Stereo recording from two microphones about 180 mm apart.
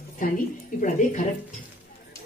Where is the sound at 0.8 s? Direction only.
45° left (ahead or behind).